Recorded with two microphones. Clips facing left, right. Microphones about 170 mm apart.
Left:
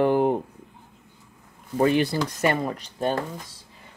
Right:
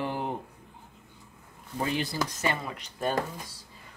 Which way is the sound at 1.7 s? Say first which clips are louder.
Left 10 dB; 60° left (ahead or behind).